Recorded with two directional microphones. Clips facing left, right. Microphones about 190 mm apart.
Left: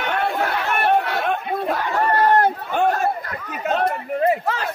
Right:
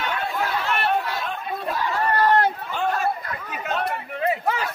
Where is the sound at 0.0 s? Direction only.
60° left (ahead or behind); by 4.4 s 45° left (ahead or behind).